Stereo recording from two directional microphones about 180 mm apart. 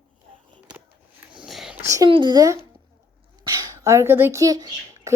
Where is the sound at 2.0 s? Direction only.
25° right (ahead or behind).